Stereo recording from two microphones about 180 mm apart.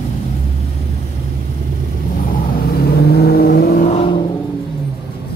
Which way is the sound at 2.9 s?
60° left (ahead or behind).